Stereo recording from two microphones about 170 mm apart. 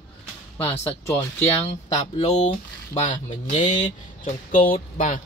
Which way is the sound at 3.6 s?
45° left (ahead or behind).